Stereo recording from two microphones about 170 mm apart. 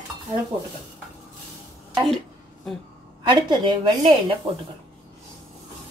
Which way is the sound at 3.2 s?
30° right (ahead or behind).